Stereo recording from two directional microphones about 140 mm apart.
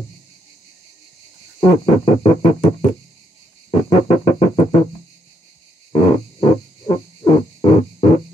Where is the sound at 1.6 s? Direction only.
40° left (ahead or behind).